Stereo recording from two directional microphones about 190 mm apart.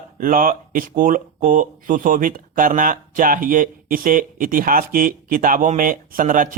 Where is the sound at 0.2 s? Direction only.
45° right (ahead or behind).